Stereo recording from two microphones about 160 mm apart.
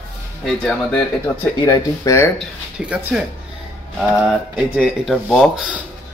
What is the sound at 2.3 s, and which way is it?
Speech, 5° right (ahead or behind).